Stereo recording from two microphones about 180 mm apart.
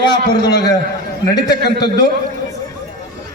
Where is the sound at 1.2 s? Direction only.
20° left (ahead or behind).